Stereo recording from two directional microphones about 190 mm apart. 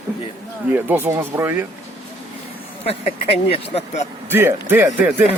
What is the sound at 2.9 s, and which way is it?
Speech, 30° left (ahead or behind).